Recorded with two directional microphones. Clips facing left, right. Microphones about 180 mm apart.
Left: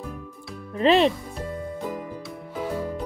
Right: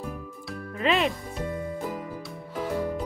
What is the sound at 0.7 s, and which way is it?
Speech, 30° left (ahead or behind).